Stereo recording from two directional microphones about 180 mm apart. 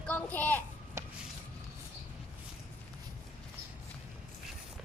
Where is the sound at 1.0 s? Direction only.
15° right (ahead or behind).